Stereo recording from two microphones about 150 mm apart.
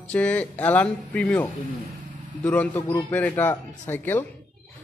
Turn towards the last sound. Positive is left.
turn(degrees=15)  # may be behind; listen again after turning